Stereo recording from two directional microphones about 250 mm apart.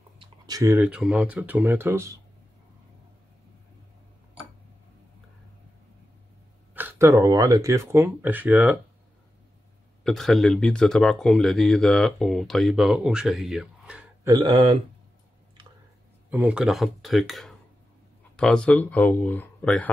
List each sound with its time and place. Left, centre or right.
0.2 s speech: centre
6.7 s speech: centre
10.0 s speech: centre
14.3 s speech: centre
16.3 s speech: centre